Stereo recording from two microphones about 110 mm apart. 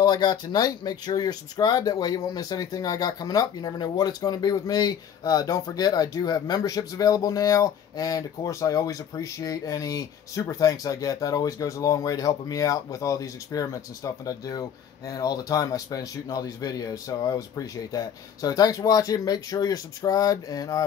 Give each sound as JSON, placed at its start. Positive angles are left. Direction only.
{"t": 0.0, "sound": "speech", "side_deg": 40}